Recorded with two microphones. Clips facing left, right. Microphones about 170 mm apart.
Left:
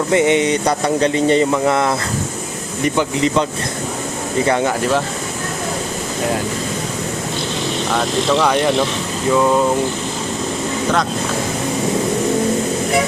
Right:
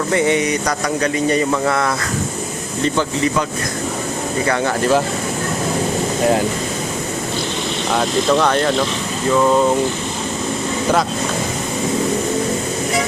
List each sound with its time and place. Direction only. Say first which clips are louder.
0.1 s speech: left 3 dB; 20° left (ahead or behind)
4.4 s speech: left 2 dB; 20° left (ahead or behind)
7.9 s speech: right 1 dB; centre (ahead or behind)